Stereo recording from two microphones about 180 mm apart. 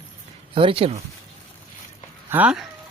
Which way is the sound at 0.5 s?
30° right (ahead or behind).